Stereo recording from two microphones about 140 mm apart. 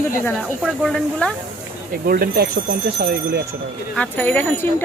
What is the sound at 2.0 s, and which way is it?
Speech, 90° right.